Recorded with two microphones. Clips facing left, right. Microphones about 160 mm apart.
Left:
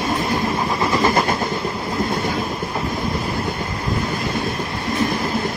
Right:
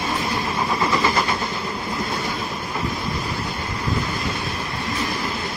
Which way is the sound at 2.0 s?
50° left (ahead or behind).